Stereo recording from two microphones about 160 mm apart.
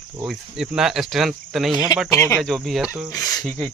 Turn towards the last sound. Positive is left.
turn(degrees=0)  # may be behind; listen again after turning